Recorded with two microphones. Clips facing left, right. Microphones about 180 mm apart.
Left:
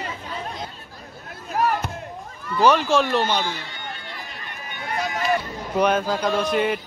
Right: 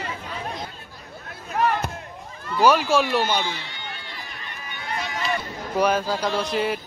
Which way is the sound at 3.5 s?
50° left (ahead or behind).